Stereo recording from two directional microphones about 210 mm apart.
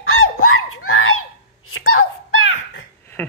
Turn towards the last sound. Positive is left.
turn(degrees=10)  # may be behind; listen again after turning